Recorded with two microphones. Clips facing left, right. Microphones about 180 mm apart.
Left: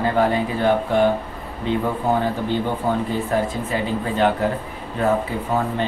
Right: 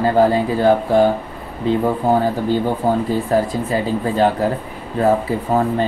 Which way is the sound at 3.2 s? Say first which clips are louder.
Right 4 dB; 35° right (ahead or behind).